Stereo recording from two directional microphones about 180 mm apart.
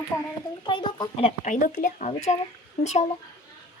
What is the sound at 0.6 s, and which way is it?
Speech, 25° left (ahead or behind).